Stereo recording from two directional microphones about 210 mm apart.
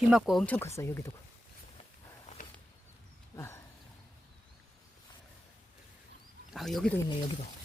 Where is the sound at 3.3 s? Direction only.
10° left (ahead or behind).